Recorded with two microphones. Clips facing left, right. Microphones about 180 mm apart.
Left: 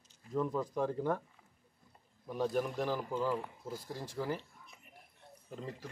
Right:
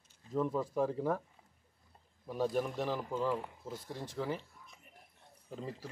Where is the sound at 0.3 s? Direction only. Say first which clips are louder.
Right 1 dB; 5° right (ahead or behind).